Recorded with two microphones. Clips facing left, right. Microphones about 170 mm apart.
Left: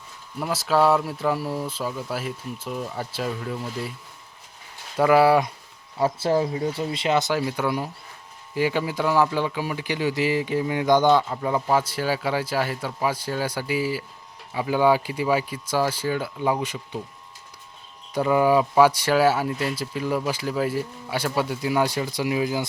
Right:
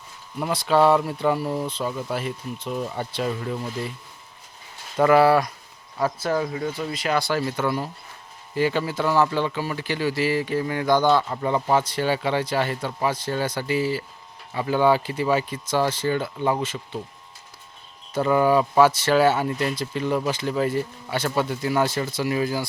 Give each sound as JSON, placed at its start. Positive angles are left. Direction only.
{"t": 0.3, "sound": "speech", "side_deg": 0}
{"t": 4.9, "sound": "speech", "side_deg": 5}
{"t": 6.1, "sound": "speech", "side_deg": 30}
{"t": 11.3, "sound": "speech", "side_deg": 5}
{"t": 18.1, "sound": "speech", "side_deg": 10}